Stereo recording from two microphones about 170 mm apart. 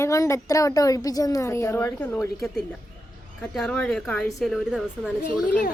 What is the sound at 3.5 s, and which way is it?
Speech, 5° left (ahead or behind).